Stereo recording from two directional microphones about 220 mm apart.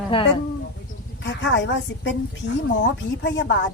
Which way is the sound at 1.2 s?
55° left (ahead or behind).